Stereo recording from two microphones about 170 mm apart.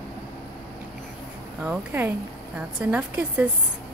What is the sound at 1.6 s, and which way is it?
Speech, 10° right (ahead or behind).